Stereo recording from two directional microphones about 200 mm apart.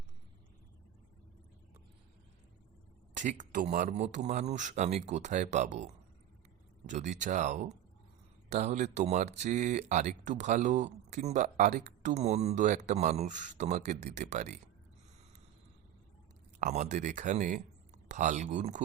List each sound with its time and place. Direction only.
3.2 s speech: 40° right (ahead or behind)
16.6 s speech: 35° right (ahead or behind)